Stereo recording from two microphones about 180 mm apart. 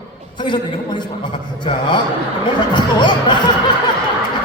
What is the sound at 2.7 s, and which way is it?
Speech, 25° left (ahead or behind).